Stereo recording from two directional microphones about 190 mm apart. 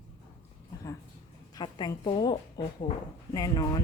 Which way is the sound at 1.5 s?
20° left (ahead or behind).